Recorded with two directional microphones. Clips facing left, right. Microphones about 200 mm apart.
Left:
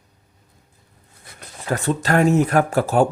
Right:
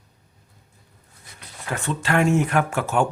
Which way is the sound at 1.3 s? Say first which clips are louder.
Left 6 dB; 40° left (ahead or behind).